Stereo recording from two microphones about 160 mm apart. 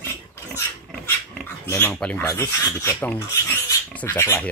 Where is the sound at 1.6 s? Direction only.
15° left (ahead or behind).